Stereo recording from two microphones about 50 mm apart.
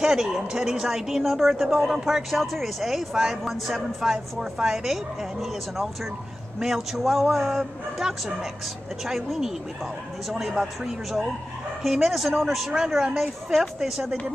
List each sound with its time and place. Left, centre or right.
0.0 s a woman's voice: centre
6.6 s a woman's voice: centre